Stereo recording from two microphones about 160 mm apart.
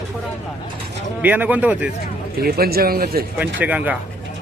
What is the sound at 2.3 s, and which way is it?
Speech, 70° right (ahead or behind).